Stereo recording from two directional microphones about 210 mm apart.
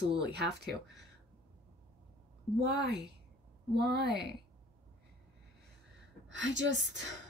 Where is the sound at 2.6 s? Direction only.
50° right (ahead or behind).